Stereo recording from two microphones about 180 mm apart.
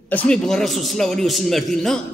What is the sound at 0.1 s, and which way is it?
A man's voice, 5° left (ahead or behind).